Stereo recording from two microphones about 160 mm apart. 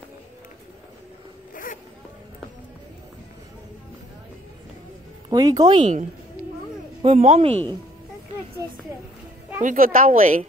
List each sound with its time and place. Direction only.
1.5 s zipper: 60° left (ahead or behind)
5.3 s speech: 25° right (ahead or behind)
5.8 s speech: 50° right (ahead or behind)
7.1 s speech: 45° right (ahead or behind)
9.6 s a woman's voice: 55° right (ahead or behind)